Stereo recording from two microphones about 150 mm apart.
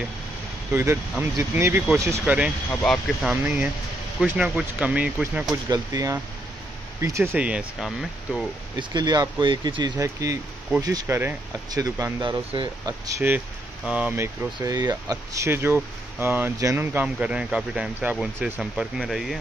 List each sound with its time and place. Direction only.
1.4 s speech: 15° right (ahead or behind)
2.7 s speech: 5° left (ahead or behind)
5.7 s speech: 20° right (ahead or behind)
7.4 s speech: 5° right (ahead or behind)
8.7 s speech: 25° right (ahead or behind)
11.1 s speech: 15° right (ahead or behind)
11.7 s speech: 25° right (ahead or behind); by 19.3 s centre (ahead or behind)